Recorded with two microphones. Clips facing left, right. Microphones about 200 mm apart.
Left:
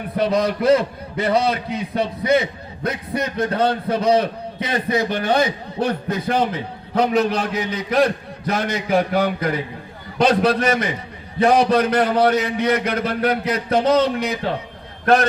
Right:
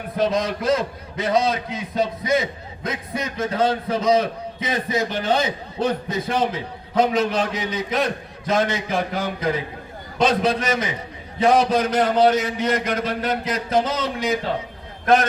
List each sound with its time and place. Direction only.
0.2 s a man's voice: 60° left (ahead or behind)